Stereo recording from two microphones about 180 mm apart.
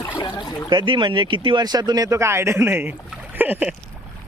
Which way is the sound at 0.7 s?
25° right (ahead or behind).